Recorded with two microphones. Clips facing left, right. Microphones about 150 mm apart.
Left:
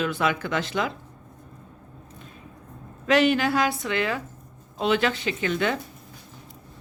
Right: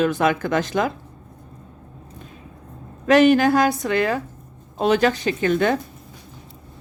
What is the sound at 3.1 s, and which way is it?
A woman's voice, 45° right (ahead or behind).